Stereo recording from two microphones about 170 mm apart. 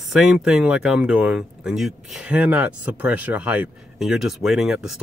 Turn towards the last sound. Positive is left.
turn(degrees=0)  # may be behind; listen again after turning